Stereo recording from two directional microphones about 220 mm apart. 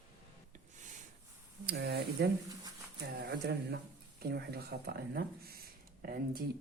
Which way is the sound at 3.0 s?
45° right (ahead or behind).